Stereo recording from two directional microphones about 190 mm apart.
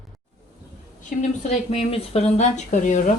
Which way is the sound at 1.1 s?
45° left (ahead or behind).